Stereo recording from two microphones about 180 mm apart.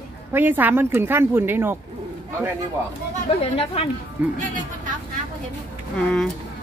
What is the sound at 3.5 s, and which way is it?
Speech, 30° left (ahead or behind).